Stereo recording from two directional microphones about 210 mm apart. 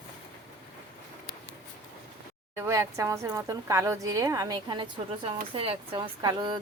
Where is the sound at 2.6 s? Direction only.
15° right (ahead or behind).